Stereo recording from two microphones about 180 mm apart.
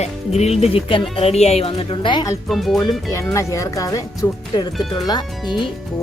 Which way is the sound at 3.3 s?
15° left (ahead or behind).